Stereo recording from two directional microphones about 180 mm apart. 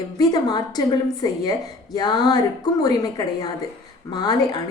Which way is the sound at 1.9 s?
25° left (ahead or behind).